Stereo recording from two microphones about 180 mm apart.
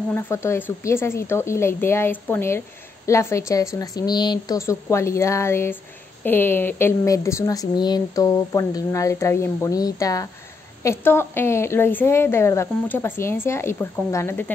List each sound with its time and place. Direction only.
0.1 s a woman's voice: 15° left (ahead or behind)